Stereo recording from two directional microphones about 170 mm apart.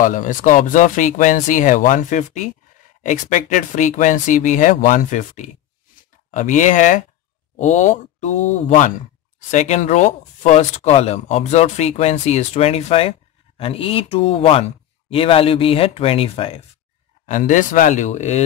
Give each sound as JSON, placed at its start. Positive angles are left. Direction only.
{"t": 0.0, "sound": "speech", "side_deg": 50}
{"t": 17.3, "sound": "speech", "side_deg": 45}